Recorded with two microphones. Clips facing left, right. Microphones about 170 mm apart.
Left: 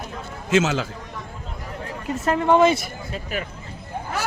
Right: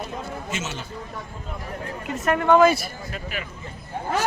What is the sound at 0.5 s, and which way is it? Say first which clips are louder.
Speech: left 16 dB; 90° left.